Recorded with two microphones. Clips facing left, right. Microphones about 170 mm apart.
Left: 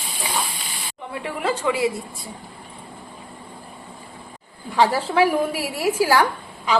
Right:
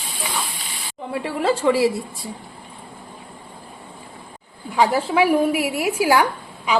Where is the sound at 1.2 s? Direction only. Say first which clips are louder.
Right 4 dB; 30° right (ahead or behind).